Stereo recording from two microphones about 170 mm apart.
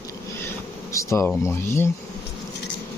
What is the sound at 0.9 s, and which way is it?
Speech, 15° left (ahead or behind).